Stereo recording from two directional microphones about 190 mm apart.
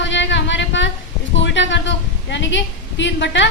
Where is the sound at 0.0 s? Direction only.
70° left (ahead or behind).